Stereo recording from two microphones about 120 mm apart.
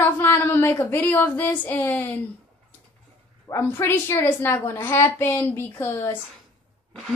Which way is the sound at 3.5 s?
20° left (ahead or behind).